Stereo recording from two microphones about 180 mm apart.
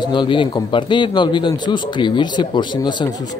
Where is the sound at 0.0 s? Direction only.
25° left (ahead or behind).